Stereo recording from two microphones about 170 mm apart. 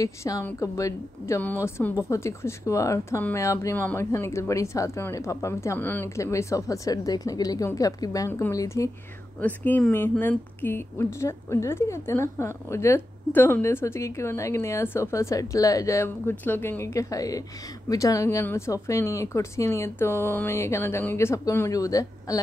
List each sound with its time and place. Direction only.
0.0 s a woman's voice: 20° left (ahead or behind)